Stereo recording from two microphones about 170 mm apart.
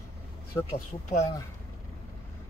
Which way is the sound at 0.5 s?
20° left (ahead or behind).